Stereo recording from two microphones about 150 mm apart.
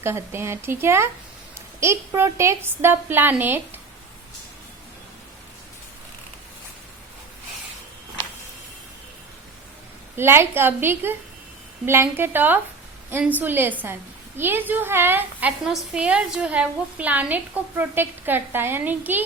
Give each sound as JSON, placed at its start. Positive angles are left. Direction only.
{"t": 0.0, "sound": "a woman's voice", "side_deg": -15}
{"t": 10.2, "sound": "a woman's voice", "side_deg": -15}